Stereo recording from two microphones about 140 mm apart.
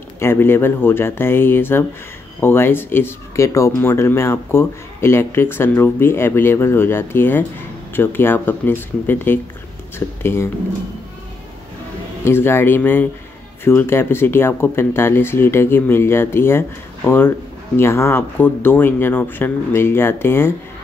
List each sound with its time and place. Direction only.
0.2 s speech: 15° left (ahead or behind)
12.3 s speech: 15° left (ahead or behind)